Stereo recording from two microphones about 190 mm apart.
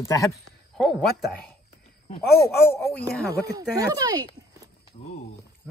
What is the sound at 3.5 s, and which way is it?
Speech, 20° right (ahead or behind).